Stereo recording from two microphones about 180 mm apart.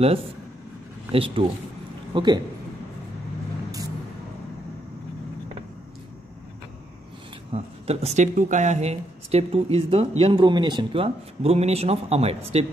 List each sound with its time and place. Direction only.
1.1 s a man's voice: 30° right (ahead or behind)
7.5 s speech: 35° right (ahead or behind)